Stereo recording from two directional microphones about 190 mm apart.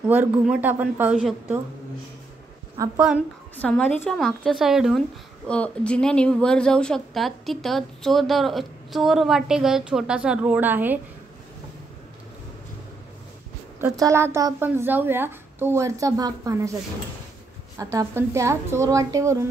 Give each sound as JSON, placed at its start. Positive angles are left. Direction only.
{"t": 0.1, "sound": "speech", "side_deg": -10}
{"t": 2.8, "sound": "speech", "side_deg": -15}
{"t": 3.5, "sound": "a woman's voice", "side_deg": 5}
{"t": 13.7, "sound": "speech", "side_deg": -15}
{"t": 17.9, "sound": "speech", "side_deg": -15}